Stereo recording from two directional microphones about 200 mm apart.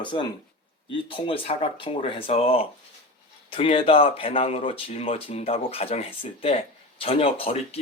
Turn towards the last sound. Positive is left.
turn(degrees=30)  # may be behind; listen again after turning